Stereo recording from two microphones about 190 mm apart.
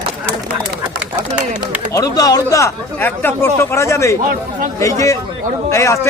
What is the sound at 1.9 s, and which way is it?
A man's voice, 20° left (ahead or behind).